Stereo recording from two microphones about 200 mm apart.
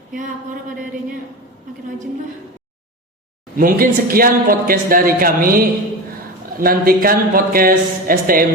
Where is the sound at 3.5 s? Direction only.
45° right (ahead or behind).